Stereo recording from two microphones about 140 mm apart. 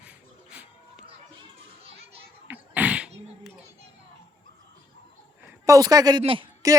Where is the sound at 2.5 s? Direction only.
10° right (ahead or behind).